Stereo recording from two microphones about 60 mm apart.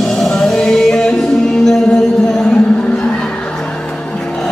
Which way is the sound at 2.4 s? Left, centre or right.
Centre.